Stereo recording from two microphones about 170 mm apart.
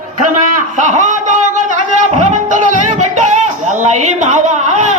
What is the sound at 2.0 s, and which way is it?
Music, 45° right (ahead or behind).